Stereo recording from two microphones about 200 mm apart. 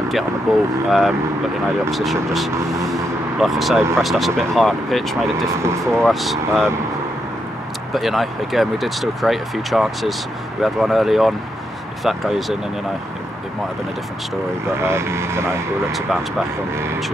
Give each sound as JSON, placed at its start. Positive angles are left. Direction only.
{"t": 0.5, "sound": "speech", "side_deg": 0}
{"t": 2.5, "sound": "speech", "side_deg": -15}
{"t": 2.8, "sound": "vehicle", "side_deg": 0}
{"t": 4.0, "sound": "speech", "side_deg": 0}
{"t": 5.3, "sound": "speech", "side_deg": -15}
{"t": 5.9, "sound": "speech", "side_deg": 0}
{"t": 7.9, "sound": "speech", "side_deg": 0}
{"t": 14.7, "sound": "speech", "side_deg": -15}